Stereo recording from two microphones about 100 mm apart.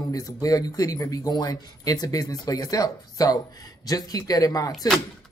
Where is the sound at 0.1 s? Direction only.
35° left (ahead or behind).